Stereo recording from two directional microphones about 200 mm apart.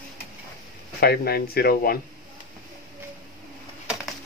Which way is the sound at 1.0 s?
50° left (ahead or behind).